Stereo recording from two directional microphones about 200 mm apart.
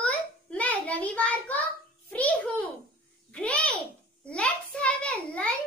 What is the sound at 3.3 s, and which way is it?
Babbling, 5° left (ahead or behind).